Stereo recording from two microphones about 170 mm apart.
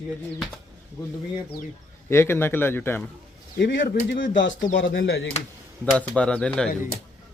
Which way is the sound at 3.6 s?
90° left.